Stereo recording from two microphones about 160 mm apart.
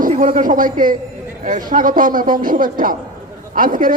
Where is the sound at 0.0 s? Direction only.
55° right (ahead or behind).